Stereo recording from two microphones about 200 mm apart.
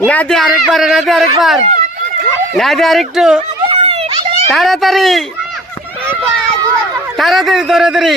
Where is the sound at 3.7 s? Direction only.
30° right (ahead or behind).